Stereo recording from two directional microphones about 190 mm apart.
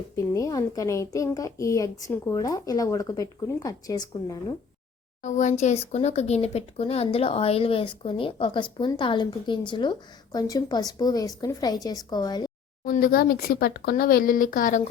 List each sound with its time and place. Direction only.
0.3 s a woman's voice: 20° left (ahead or behind)
5.2 s speech: 40° left (ahead or behind); by 12.5 s 20° left (ahead or behind)
12.8 s speech: 50° left (ahead or behind)